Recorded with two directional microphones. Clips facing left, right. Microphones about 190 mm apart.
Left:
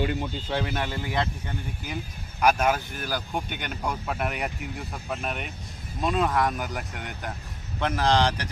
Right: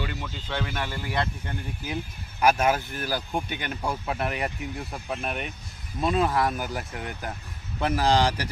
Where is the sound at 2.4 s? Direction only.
5° right (ahead or behind).